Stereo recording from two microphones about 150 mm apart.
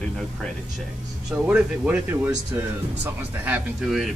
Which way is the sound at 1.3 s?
5° right (ahead or behind).